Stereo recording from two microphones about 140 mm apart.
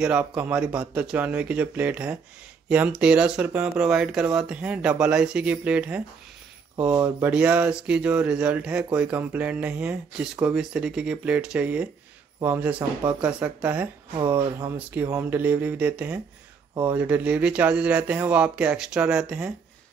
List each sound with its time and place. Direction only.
0.0 s speech: 10° right (ahead or behind)
7.2 s speech: 10° right (ahead or behind)
15.1 s speech: 15° right (ahead or behind)